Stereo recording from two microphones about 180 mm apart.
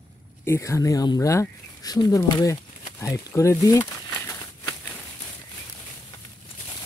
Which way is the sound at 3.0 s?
15° left (ahead or behind).